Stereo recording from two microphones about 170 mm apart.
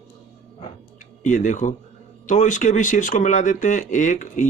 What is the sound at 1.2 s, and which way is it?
Speech, 45° left (ahead or behind).